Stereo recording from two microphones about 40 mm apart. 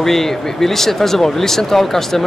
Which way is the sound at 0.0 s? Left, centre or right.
Centre.